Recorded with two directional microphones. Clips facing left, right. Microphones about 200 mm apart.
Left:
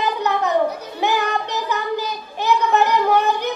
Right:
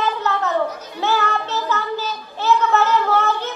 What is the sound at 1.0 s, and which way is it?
Child singing, 15° left (ahead or behind).